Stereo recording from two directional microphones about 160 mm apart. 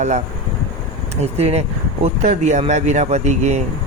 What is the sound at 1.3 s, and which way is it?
Speech, 40° right (ahead or behind).